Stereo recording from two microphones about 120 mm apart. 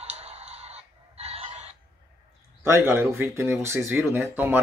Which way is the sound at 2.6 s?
20° right (ahead or behind).